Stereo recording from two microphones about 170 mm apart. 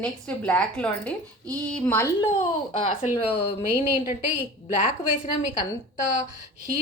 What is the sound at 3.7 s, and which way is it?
Speech, 15° right (ahead or behind).